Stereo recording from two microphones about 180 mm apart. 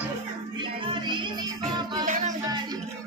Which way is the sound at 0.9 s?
25° right (ahead or behind).